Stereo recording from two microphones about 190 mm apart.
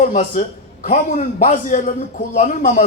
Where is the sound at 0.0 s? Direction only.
40° left (ahead or behind).